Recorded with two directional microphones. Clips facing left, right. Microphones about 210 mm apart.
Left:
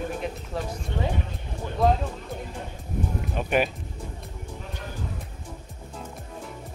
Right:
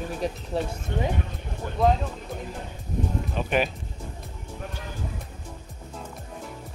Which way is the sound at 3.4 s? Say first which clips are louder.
Left 1 dB; 10° left (ahead or behind).